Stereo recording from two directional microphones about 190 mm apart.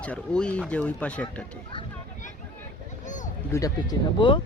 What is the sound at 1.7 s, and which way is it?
Speech, 25° left (ahead or behind).